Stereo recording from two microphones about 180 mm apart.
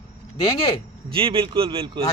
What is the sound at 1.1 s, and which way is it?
Speech, 30° right (ahead or behind).